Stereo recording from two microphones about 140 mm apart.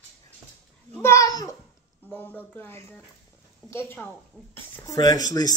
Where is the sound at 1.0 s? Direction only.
25° left (ahead or behind).